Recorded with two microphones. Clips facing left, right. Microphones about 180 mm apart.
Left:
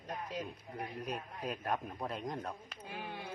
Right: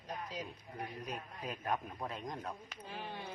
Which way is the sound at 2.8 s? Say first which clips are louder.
Left 1 dB; 10° left (ahead or behind).